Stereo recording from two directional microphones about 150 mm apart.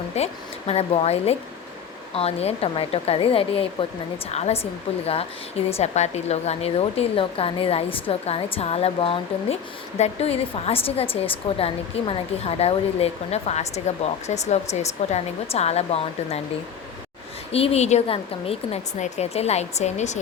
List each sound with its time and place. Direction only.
0.1 s a woman's voice: 45° left (ahead or behind)
17.5 s a woman's voice: 40° left (ahead or behind)